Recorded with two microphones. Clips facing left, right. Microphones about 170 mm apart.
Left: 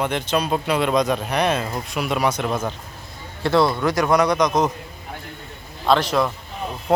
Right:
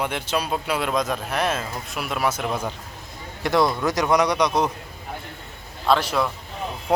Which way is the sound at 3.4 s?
15° right (ahead or behind).